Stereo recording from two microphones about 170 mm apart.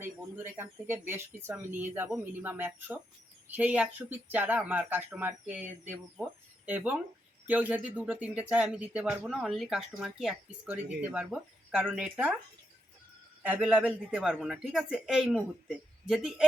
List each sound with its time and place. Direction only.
0.0 s speech: 15° right (ahead or behind)
13.4 s speech: 10° right (ahead or behind)